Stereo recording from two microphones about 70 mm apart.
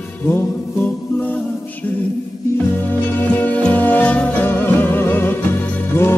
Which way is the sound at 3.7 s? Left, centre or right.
Left.